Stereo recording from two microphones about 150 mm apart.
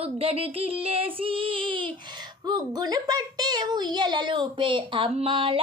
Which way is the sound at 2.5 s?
25° right (ahead or behind).